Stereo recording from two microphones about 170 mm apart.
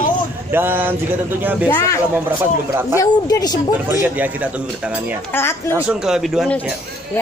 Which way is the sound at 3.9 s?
10° right (ahead or behind).